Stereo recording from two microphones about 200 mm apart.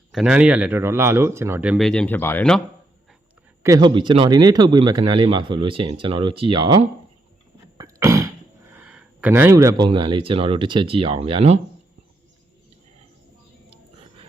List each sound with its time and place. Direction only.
0.1 s speech: 5° right (ahead or behind)
1.9 s speech: 5° left (ahead or behind)
3.6 s speech: 20° right (ahead or behind)
7.8 s a sound: 15° right (ahead or behind)
8.8 s speech: 5° right (ahead or behind); by 11.6 s 30° right (ahead or behind)